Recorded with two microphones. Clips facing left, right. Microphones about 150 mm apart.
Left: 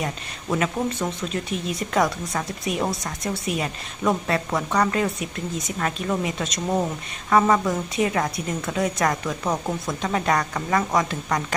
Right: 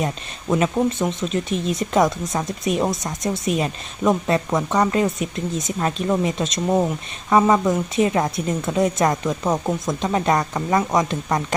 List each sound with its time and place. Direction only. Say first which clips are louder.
0.6 s speech: right 5 dB; 25° right (ahead or behind)